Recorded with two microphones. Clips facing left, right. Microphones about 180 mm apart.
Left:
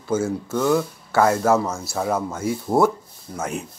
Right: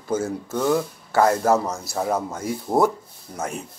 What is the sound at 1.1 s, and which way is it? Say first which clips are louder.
Speech: even; 35° right (ahead or behind).